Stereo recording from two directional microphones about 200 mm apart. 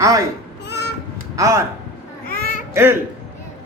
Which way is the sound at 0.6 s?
55° left (ahead or behind).